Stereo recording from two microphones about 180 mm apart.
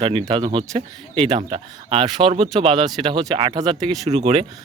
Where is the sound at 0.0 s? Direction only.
30° right (ahead or behind).